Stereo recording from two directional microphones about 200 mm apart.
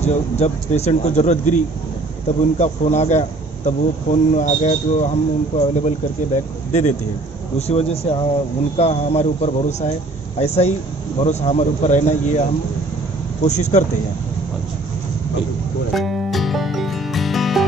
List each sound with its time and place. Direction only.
0.0 s speech: 35° left (ahead or behind)
15.9 s music: centre (ahead or behind)